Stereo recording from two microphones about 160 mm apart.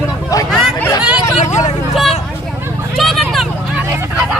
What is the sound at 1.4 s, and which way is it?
Hubbub, 45° left (ahead or behind).